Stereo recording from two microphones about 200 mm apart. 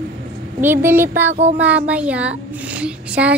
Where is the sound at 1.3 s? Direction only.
35° right (ahead or behind).